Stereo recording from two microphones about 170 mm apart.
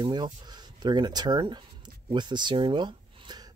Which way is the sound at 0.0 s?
25° right (ahead or behind).